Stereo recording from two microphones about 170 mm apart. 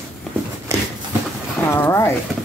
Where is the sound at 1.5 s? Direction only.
10° left (ahead or behind).